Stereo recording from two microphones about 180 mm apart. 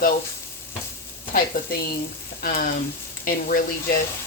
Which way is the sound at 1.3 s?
55° left (ahead or behind).